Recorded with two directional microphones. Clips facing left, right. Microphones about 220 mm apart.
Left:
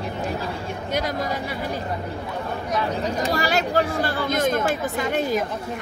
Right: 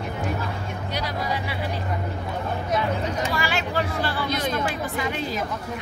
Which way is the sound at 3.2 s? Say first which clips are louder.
Left 4 dB; 40° left (ahead or behind).